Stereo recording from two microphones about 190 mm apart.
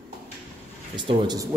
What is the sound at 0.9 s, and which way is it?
Speech, 25° right (ahead or behind).